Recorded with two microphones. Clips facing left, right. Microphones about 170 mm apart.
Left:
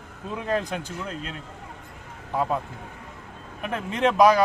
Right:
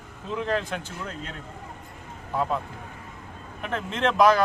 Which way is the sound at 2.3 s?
15° left (ahead or behind).